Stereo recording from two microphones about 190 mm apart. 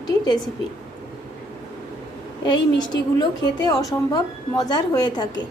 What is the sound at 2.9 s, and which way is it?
A woman's voice, 20° left (ahead or behind).